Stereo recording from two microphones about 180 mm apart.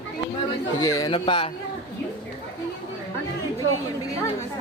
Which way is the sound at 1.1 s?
30° left (ahead or behind).